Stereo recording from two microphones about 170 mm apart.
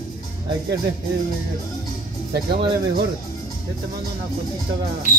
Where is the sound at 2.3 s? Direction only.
70° right (ahead or behind).